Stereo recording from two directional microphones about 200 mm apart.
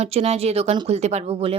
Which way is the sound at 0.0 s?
30° right (ahead or behind).